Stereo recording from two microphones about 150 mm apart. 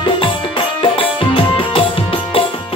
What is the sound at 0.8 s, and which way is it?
Music, 35° left (ahead or behind).